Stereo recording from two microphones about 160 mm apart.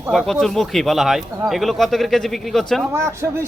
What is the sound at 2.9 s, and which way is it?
Speech, 15° right (ahead or behind).